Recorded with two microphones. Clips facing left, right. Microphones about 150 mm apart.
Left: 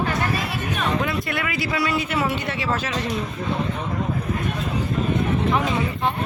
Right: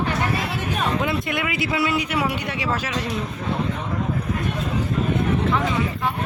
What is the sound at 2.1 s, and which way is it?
Speech, 10° right (ahead or behind).